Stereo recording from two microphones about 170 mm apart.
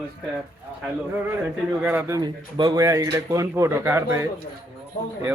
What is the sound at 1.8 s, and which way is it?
Speech, 10° right (ahead or behind).